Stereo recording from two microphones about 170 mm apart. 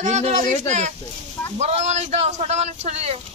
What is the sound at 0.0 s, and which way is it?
Speech, 45° right (ahead or behind).